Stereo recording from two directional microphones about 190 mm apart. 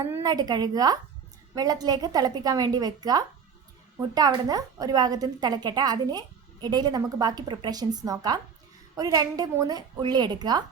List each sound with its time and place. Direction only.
0.0 s a woman's voice: 20° right (ahead or behind)